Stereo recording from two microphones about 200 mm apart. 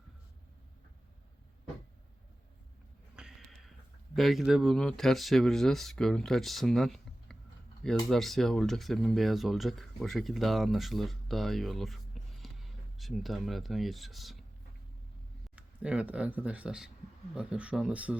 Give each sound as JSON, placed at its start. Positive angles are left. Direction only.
{"t": 3.2, "sound": "a sound", "side_deg": -5}
{"t": 4.1, "sound": "speech", "side_deg": 0}
{"t": 15.5, "sound": "speech", "side_deg": -5}